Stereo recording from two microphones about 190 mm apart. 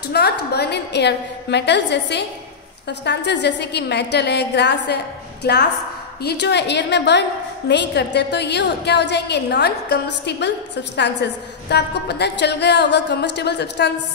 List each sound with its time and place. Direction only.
0.1 s a woman's voice: 60° left (ahead or behind)